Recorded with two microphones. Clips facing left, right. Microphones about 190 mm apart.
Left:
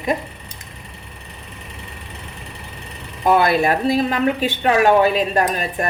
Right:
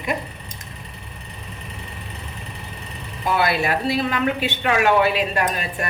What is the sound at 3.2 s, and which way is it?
A woman's voice, 45° left (ahead or behind).